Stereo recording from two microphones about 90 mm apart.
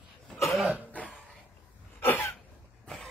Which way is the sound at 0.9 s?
15° left (ahead or behind).